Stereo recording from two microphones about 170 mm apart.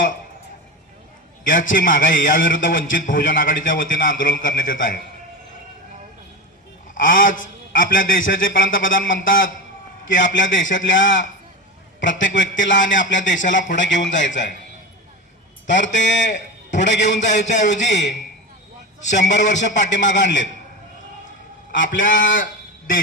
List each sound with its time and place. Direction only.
1.5 s a man's voice: 55° left (ahead or behind)
6.9 s a man's voice: 55° left (ahead or behind)
10.1 s a man's voice: 90° left
15.6 s a man's voice: 90° left
17.2 s a man's voice: 45° left (ahead or behind)
17.8 s a man's voice: 90° left
19.1 s a man's voice: 45° left (ahead or behind)
19.9 s a man's voice: 90° left
21.8 s a man's voice: 50° left (ahead or behind)